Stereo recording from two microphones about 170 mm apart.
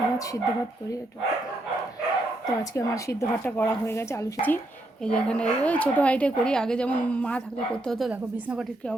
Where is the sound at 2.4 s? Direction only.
20° left (ahead or behind); by 8.1 s 5° left (ahead or behind).